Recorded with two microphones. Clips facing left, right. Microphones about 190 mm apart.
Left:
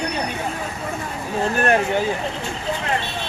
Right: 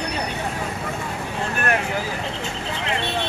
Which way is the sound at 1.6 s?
30° left (ahead or behind).